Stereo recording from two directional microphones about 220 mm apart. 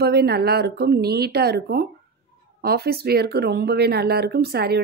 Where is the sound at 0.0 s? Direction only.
45° right (ahead or behind).